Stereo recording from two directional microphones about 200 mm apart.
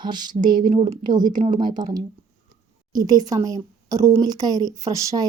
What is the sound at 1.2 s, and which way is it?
Speech, 40° right (ahead or behind).